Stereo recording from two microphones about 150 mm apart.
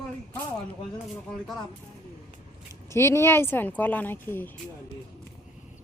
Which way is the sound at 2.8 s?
20° left (ahead or behind).